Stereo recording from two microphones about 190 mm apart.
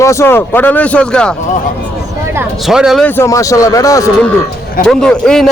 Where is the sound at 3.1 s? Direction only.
15° left (ahead or behind).